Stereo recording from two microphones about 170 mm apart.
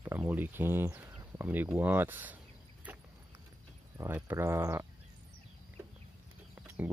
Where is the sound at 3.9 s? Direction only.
15° right (ahead or behind).